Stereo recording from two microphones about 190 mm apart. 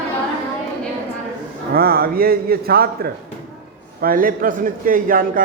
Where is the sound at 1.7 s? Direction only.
50° right (ahead or behind).